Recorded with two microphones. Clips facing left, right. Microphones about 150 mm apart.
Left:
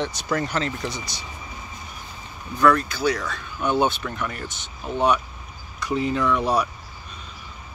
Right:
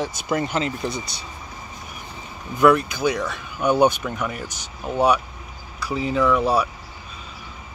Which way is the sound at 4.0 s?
5° right (ahead or behind).